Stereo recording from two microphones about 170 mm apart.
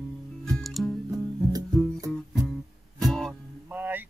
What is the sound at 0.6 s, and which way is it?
Music, centre (ahead or behind).